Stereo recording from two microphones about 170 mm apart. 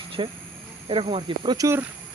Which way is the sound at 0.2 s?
30° right (ahead or behind).